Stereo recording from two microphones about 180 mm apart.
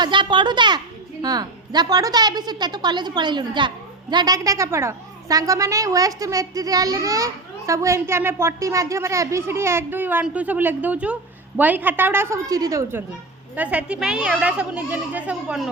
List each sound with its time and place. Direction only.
0.0 s a woman's voice: 25° right (ahead or behind); by 15.7 s 5° right (ahead or behind)